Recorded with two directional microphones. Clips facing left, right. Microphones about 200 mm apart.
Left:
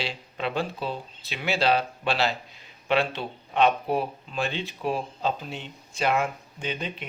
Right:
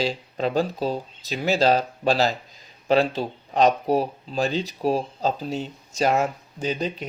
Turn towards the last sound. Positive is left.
turn(degrees=-40)  # may be behind; listen again after turning